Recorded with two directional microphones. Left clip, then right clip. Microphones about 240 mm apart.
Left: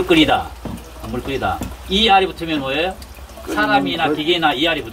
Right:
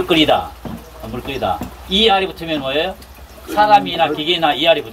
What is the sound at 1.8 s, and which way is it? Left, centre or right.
Speech, centre.